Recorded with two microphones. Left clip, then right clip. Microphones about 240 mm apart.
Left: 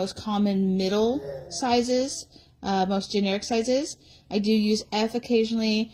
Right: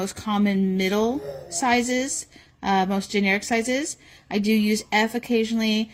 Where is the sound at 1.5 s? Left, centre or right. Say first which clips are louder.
Right 1 dB; right.